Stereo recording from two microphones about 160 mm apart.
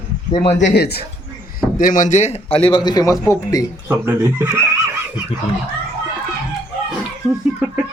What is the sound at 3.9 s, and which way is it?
Speech, 15° right (ahead or behind).